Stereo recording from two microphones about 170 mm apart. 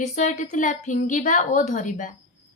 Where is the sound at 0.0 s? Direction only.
45° left (ahead or behind).